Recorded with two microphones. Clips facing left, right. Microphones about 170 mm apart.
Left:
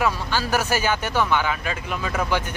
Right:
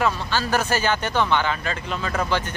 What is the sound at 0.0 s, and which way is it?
Speech, 10° left (ahead or behind).